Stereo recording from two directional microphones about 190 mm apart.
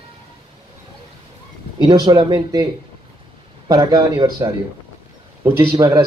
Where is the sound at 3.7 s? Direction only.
20° right (ahead or behind).